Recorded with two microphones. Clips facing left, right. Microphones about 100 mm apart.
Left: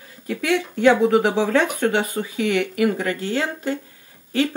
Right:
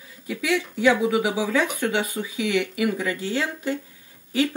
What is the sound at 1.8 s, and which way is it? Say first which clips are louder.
Speech: left 4 dB; 45° left (ahead or behind).